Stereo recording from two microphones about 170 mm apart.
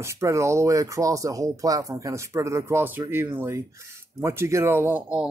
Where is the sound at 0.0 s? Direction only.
15° right (ahead or behind).